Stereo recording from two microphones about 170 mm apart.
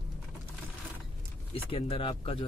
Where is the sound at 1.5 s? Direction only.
35° left (ahead or behind).